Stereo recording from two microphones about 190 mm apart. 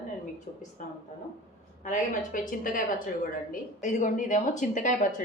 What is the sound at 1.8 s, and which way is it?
Speech, 40° left (ahead or behind).